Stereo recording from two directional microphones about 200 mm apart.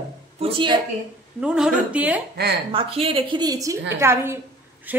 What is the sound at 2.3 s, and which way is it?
Speech, 55° right (ahead or behind).